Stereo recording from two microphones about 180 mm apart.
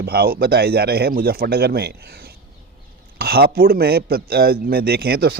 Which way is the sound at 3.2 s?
60° right (ahead or behind).